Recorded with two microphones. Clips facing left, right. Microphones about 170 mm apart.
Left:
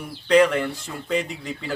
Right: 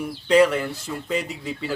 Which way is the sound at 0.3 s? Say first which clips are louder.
Even; 5° right (ahead or behind).